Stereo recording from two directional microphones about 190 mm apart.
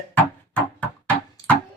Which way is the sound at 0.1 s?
10° left (ahead or behind).